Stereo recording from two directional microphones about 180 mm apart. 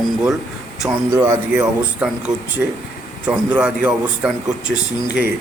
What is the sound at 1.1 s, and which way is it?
Speech, 15° right (ahead or behind).